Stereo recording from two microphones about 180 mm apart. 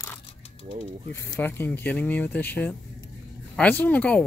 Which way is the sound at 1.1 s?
15° left (ahead or behind).